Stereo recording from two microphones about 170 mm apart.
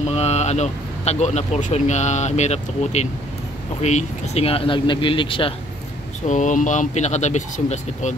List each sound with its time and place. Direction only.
0.1 s speech: 40° left (ahead or behind)
6.2 s speech: 45° left (ahead or behind)